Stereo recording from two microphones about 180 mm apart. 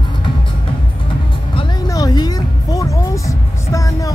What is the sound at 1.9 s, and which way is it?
Music, 20° left (ahead or behind).